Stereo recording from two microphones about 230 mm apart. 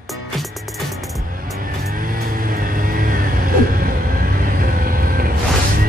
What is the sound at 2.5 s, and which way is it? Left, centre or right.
Vehicle, right.